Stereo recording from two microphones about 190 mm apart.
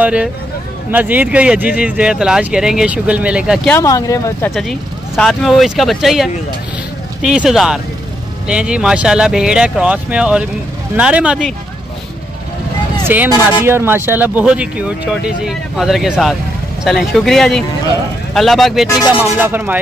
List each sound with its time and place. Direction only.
0.0 s speech: 5° right (ahead or behind)
3.6 s speech: 15° left (ahead or behind)
4.6 s speech: centre (ahead or behind)
13.0 s speech: 10° right (ahead or behind)
19.4 s speech: 10° right (ahead or behind)